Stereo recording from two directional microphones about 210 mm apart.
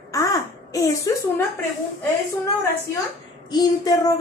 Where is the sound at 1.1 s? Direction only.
15° left (ahead or behind).